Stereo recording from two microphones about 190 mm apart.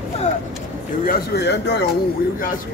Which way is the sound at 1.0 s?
55° left (ahead or behind).